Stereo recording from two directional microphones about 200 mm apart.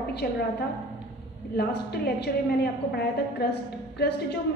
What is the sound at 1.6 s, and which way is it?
A woman's voice, 55° left (ahead or behind).